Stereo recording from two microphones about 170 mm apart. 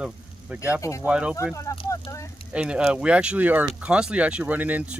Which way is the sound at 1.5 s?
20° left (ahead or behind).